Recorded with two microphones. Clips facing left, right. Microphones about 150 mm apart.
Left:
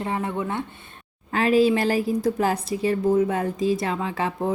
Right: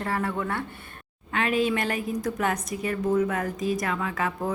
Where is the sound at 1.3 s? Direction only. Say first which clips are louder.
Left 6 dB; 35° left (ahead or behind).